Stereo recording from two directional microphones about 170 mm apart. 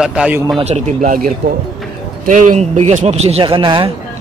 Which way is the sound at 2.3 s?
45° right (ahead or behind).